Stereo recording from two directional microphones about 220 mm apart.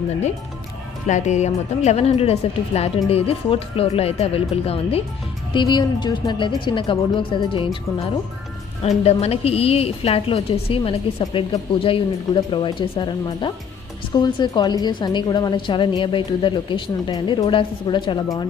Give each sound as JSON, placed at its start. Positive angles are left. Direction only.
{"t": 1.0, "sound": "a woman's voice", "side_deg": 30}